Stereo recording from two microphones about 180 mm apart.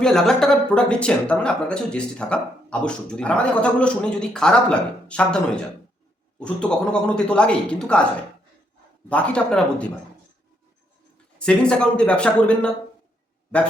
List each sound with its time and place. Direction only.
0.0 s speech: centre (ahead or behind)
6.4 s speech: 5° left (ahead or behind)
9.0 s speech: 5° left (ahead or behind)
11.3 s speech: 5° left (ahead or behind)